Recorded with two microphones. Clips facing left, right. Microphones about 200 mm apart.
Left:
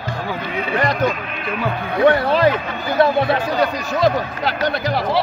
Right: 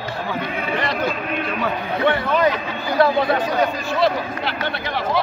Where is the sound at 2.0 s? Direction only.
35° left (ahead or behind).